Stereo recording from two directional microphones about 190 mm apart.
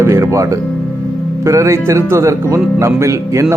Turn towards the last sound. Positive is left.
turn(degrees=-15)  # may be behind; listen again after turning